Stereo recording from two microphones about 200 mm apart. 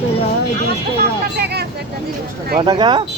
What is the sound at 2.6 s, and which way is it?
Speech, 25° right (ahead or behind).